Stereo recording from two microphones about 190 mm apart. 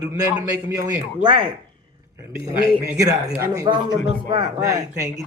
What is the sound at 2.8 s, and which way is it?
A man's voice, 15° right (ahead or behind).